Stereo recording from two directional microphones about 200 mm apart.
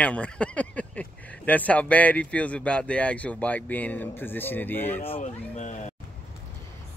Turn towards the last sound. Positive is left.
turn(degrees=35)  # may be behind; listen again after turning